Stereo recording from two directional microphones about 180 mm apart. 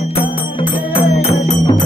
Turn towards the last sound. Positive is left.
turn(degrees=30)  # may be behind; listen again after turning